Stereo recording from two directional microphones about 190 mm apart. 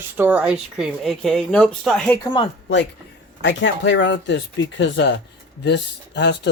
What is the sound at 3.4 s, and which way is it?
Speech, 70° left (ahead or behind).